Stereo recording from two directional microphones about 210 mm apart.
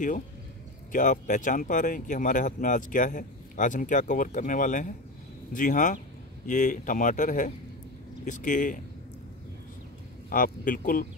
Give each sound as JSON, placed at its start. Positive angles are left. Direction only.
{"t": 0.9, "sound": "speech", "side_deg": 35}
{"t": 10.3, "sound": "speech", "side_deg": 40}